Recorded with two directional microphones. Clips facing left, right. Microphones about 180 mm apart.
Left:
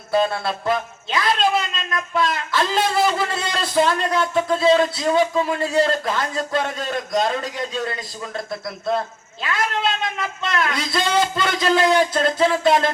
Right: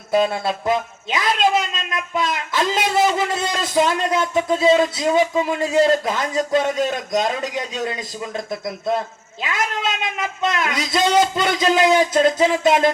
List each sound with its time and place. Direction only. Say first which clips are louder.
0.1 s a man's voice: right 2 dB; 20° right (ahead or behind)
8.4 s speech: right 1 dB; 20° right (ahead or behind)
10.2 s speech: right 2 dB; 20° right (ahead or behind)